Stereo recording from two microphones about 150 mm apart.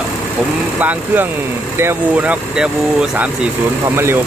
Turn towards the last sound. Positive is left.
turn(degrees=-15)  # may be behind; listen again after turning